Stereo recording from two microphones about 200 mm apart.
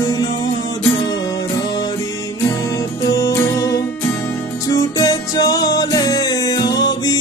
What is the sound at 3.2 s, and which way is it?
Music, 15° left (ahead or behind).